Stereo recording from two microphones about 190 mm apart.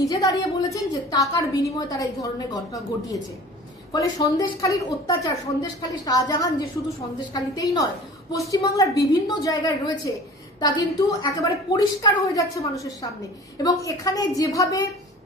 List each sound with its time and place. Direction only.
0.0 s a woman's voice: 20° left (ahead or behind)